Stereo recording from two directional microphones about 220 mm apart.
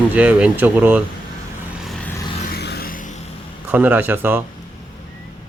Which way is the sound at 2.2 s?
25° left (ahead or behind).